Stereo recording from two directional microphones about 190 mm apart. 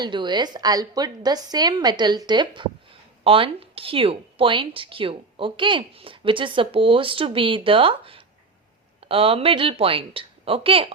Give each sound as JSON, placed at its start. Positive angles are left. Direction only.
{"t": 0.0, "sound": "a woman's voice", "side_deg": -25}